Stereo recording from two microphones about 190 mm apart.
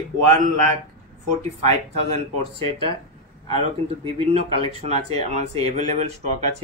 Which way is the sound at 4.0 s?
30° right (ahead or behind).